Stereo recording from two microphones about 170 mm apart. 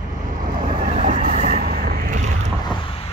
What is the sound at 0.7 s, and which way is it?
Vehicle, 40° right (ahead or behind).